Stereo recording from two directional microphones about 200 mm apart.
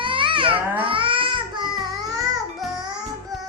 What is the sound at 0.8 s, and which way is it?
Babbling, 25° right (ahead or behind).